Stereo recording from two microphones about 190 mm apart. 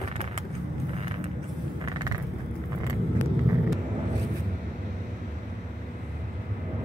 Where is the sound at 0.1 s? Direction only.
35° right (ahead or behind).